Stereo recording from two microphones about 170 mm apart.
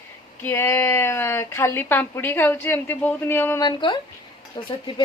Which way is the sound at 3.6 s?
25° left (ahead or behind).